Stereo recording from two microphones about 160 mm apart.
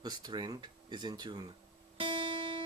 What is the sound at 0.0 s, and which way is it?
Speech, 25° right (ahead or behind).